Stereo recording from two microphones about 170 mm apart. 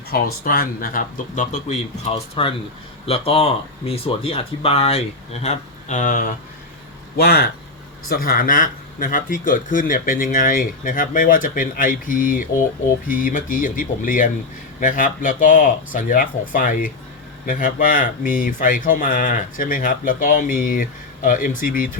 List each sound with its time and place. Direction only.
0.1 s speech: 60° left (ahead or behind)
7.2 s speech: 65° left (ahead or behind)